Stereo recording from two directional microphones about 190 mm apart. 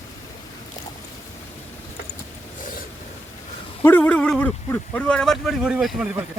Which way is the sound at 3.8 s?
10° left (ahead or behind).